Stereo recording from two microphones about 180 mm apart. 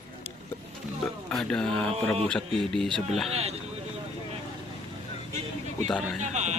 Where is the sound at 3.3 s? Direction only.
35° right (ahead or behind).